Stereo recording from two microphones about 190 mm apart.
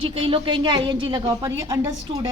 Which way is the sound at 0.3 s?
25° right (ahead or behind).